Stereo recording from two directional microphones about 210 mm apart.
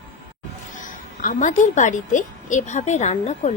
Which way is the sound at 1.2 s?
40° left (ahead or behind).